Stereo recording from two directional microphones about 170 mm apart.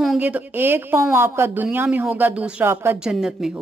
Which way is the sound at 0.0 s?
5° right (ahead or behind).